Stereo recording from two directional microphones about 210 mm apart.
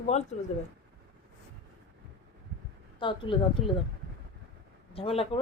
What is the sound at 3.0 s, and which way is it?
Speech, 25° left (ahead or behind).